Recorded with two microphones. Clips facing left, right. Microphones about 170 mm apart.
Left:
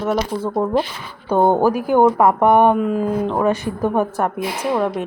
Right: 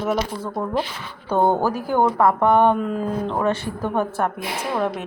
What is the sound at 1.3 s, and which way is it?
A woman's voice, 15° left (ahead or behind).